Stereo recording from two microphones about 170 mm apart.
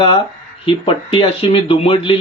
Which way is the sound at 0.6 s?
30° left (ahead or behind).